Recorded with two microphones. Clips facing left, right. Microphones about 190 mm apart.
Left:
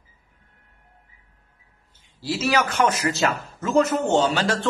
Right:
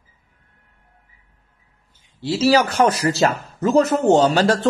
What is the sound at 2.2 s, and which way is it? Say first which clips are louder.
A man's voice: right 6 dB; 30° right (ahead or behind).